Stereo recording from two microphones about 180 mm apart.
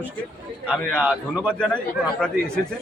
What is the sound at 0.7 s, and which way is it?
A man's voice, 5° left (ahead or behind).